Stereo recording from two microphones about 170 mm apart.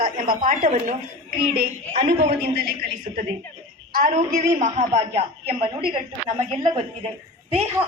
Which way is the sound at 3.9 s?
55° right (ahead or behind).